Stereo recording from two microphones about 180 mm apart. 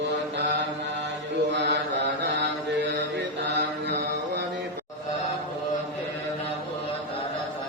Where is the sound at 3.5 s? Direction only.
75° right (ahead or behind).